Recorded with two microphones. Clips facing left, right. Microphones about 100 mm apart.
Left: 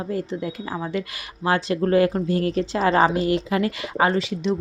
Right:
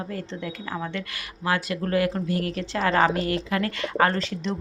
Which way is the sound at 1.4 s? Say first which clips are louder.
Left 5 dB; 25° left (ahead or behind).